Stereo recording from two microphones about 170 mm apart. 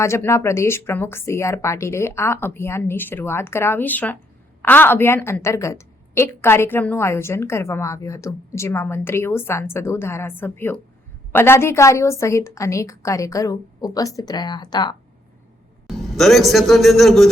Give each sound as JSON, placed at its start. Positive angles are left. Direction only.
{"t": 0.0, "sound": "a woman's voice", "side_deg": 15}
{"t": 15.9, "sound": "a man's voice", "side_deg": 0}